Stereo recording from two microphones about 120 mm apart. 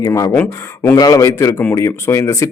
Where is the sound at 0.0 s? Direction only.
25° left (ahead or behind).